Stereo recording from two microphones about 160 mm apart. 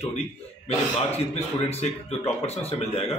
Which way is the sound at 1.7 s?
40° left (ahead or behind).